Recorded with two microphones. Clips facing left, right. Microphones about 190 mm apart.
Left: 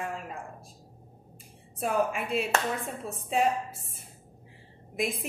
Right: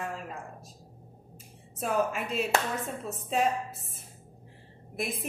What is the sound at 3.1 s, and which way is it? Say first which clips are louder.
Speech: left 2 dB; 10° left (ahead or behind).